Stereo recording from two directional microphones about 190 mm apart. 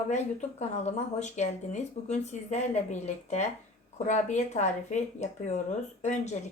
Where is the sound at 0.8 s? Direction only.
35° left (ahead or behind).